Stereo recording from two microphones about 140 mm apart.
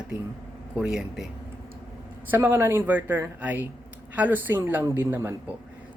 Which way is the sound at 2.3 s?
15° right (ahead or behind).